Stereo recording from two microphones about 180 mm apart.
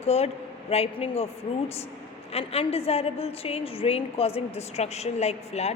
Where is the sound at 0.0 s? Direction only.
35° left (ahead or behind).